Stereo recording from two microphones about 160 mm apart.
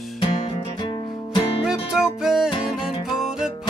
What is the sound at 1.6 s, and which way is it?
Music, 5° right (ahead or behind).